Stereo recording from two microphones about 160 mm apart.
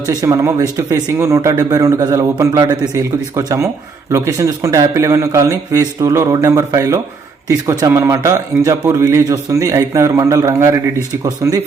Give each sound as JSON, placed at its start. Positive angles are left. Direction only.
{"t": 0.0, "sound": "speech", "side_deg": -20}